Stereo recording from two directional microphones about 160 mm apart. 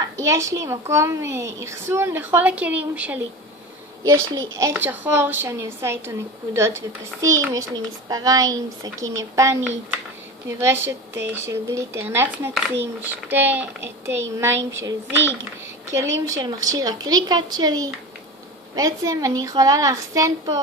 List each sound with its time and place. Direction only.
0.0 s a woman's voice: 20° right (ahead or behind)